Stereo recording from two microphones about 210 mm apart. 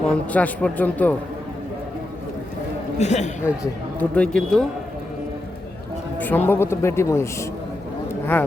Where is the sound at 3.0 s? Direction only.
35° left (ahead or behind).